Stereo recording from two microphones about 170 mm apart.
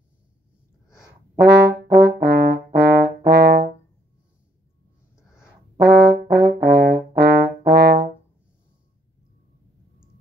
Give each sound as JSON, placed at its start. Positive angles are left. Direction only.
{"t": 1.4, "sound": "brass instrument", "side_deg": -85}
{"t": 5.8, "sound": "brass instrument", "side_deg": -85}